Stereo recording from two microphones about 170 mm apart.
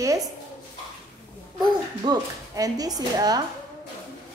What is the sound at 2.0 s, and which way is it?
A child's voice, 20° right (ahead or behind).